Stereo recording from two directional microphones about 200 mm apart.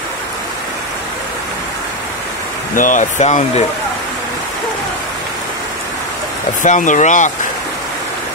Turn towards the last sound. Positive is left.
turn(degrees=35)  # may be behind; listen again after turning